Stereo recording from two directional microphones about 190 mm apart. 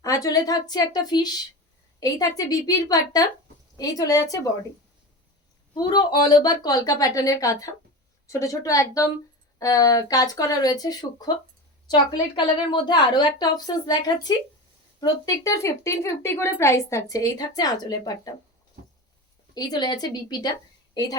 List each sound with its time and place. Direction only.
0.0 s a woman's voice: 20° left (ahead or behind)
5.7 s a woman's voice: 25° left (ahead or behind)
19.5 s a woman's voice: 20° left (ahead or behind)